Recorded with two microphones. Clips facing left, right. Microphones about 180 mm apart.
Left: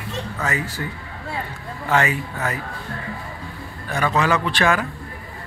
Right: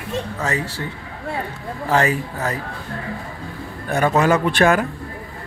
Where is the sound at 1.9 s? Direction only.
35° right (ahead or behind).